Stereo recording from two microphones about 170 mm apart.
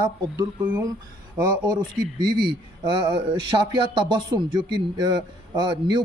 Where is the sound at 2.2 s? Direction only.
30° right (ahead or behind).